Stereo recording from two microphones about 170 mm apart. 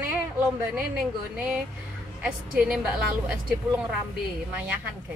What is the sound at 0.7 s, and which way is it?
A woman's voice, 5° right (ahead or behind).